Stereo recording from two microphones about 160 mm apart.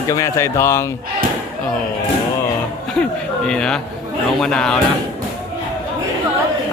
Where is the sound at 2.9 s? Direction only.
5° left (ahead or behind).